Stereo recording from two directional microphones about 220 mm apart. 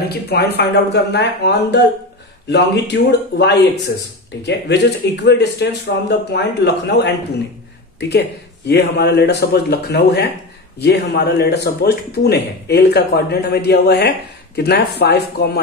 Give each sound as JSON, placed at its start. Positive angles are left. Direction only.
{"t": 0.1, "sound": "speech", "side_deg": 45}